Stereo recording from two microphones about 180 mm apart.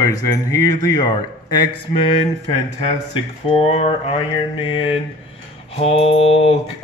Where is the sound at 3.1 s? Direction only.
30° left (ahead or behind).